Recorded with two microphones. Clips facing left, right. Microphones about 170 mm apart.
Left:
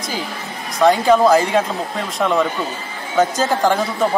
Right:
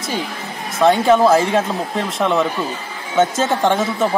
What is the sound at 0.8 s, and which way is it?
Speech, centre (ahead or behind).